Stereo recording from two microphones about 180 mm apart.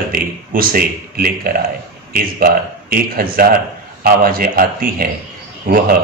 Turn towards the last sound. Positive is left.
turn(degrees=-55)  # may be behind; listen again after turning